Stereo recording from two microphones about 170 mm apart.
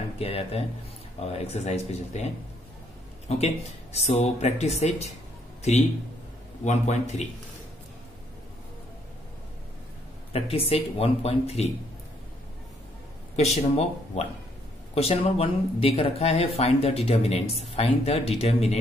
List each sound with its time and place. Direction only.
0.2 s speech: 35° left (ahead or behind)
3.3 s speech: 40° left (ahead or behind)
6.6 s a man's voice: 40° left (ahead or behind)
10.3 s speech: 35° left (ahead or behind)
13.4 s speech: 40° left (ahead or behind)